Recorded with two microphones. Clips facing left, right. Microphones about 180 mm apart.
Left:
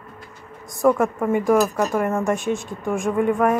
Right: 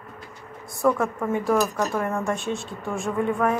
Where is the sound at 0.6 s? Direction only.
15° left (ahead or behind).